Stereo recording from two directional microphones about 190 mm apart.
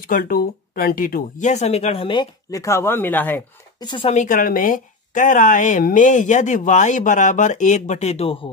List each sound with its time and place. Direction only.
0.1 s a woman's voice: 50° left (ahead or behind); by 3.4 s 10° left (ahead or behind)
3.8 s speech: 25° left (ahead or behind)
4.1 s a woman's voice: 40° left (ahead or behind)